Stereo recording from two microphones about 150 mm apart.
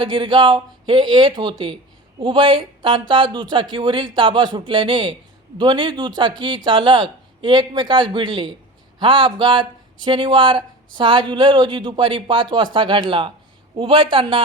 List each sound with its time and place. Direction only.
0.0 s speech: 35° right (ahead or behind)